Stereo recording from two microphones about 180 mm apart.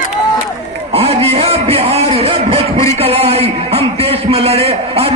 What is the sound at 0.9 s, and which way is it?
A man's voice, 35° right (ahead or behind).